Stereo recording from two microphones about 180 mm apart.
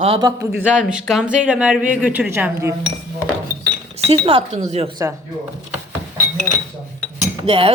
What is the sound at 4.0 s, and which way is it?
Speech, 35° right (ahead or behind).